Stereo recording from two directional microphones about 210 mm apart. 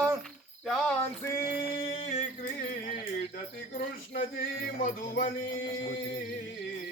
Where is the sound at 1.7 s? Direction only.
30° left (ahead or behind).